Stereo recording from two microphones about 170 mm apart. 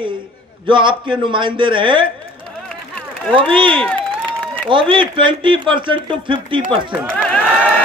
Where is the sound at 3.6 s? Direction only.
30° right (ahead or behind).